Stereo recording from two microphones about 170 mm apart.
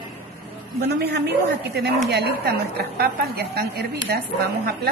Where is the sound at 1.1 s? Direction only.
70° right (ahead or behind).